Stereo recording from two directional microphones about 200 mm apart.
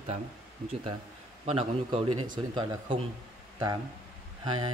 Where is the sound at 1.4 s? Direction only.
30° right (ahead or behind).